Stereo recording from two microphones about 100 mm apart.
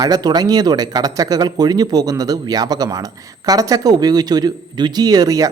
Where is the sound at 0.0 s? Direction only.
40° right (ahead or behind).